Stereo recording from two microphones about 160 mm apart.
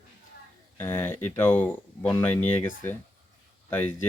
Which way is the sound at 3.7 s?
10° left (ahead or behind).